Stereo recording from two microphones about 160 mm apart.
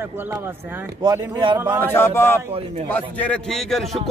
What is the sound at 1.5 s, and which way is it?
Speech, 15° right (ahead or behind).